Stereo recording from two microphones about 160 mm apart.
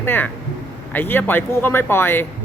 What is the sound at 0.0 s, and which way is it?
Speech, 15° left (ahead or behind).